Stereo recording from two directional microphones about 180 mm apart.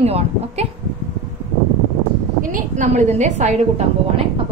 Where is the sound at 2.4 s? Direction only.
50° right (ahead or behind).